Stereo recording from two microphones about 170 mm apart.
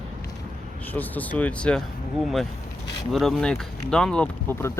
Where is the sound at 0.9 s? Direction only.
10° left (ahead or behind).